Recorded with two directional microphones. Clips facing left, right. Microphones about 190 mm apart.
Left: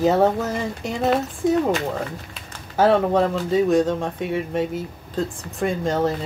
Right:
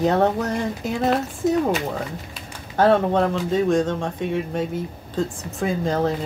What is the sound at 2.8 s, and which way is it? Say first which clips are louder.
Speech: even; 5° left (ahead or behind).